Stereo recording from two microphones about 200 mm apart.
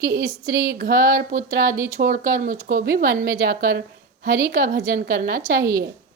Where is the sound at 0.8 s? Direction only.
45° right (ahead or behind).